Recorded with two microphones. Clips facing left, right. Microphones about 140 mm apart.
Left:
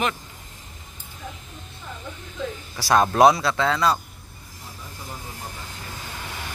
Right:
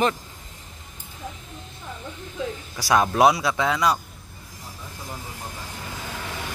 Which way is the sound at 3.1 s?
10° right (ahead or behind).